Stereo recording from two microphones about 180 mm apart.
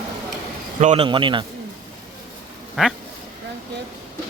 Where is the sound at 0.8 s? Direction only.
35° right (ahead or behind).